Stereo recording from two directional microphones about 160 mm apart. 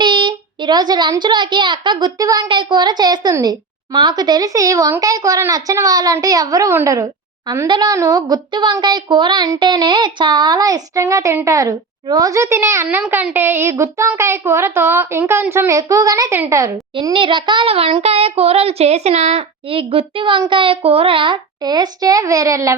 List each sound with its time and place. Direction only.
0.0 s a child's voice: 30° right (ahead or behind)
16.9 s child singing: 30° right (ahead or behind)